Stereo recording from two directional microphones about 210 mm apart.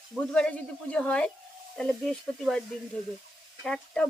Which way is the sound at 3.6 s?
5° left (ahead or behind).